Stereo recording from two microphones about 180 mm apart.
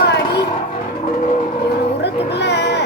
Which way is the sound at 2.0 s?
70° left (ahead or behind).